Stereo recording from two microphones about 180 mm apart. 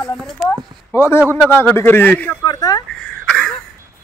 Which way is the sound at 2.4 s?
20° left (ahead or behind).